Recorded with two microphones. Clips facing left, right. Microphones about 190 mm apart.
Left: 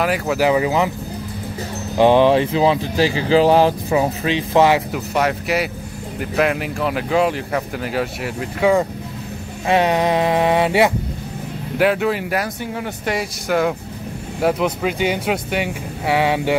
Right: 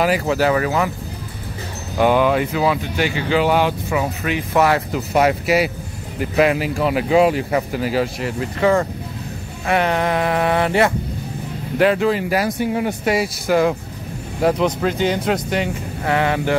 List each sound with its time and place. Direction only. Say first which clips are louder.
0.0 s speech: right 2 dB; centre (ahead or behind)
0.4 s speech: left 1 dB; 15° left (ahead or behind)
2.0 s speech: left 3 dB; 25° left (ahead or behind)
5.1 s speech: right 3 dB; 5° right (ahead or behind); by 10.9 s 15° left (ahead or behind)
11.8 s speech: right 1 dB; 5° left (ahead or behind)
12.4 s speech: right 6 dB; 15° right (ahead or behind)
13.1 s speech: right 2 dB; 5° right (ahead or behind); by 16.5 s 15° left (ahead or behind)